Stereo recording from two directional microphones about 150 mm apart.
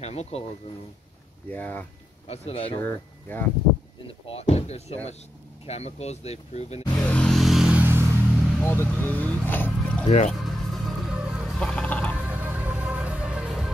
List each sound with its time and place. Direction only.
0.0 s speech: 45° left (ahead or behind)
1.5 s speech: 10° left (ahead or behind)
2.2 s speech: 40° left (ahead or behind)
2.8 s speech: 10° left (ahead or behind)
4.3 s speech: 45° left (ahead or behind)
6.9 s vehicle: 10° left (ahead or behind); by 8.1 s 15° right (ahead or behind)
8.6 s speech: 15° left (ahead or behind)
10.0 s speech: 50° left (ahead or behind)
10.3 s a sound: centre (ahead or behind)
12.2 s music: 10° right (ahead or behind)